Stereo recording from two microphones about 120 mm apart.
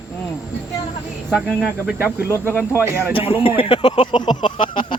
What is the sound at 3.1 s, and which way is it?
Speech, 50° left (ahead or behind).